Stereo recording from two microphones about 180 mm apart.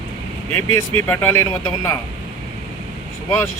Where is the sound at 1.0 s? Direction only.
15° left (ahead or behind).